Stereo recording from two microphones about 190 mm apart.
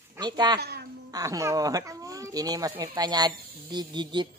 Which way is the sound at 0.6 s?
60° right (ahead or behind).